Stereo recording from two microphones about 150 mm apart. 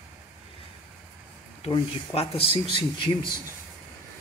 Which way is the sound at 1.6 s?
40° left (ahead or behind).